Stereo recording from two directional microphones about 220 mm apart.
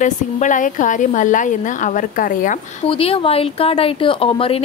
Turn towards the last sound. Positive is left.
turn(degrees=25)  # may be behind; listen again after turning